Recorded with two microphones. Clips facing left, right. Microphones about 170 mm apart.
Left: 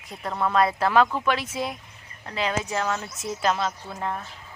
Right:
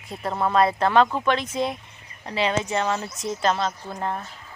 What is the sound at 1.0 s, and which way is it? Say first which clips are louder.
Speech: right 1 dB; 15° right (ahead or behind).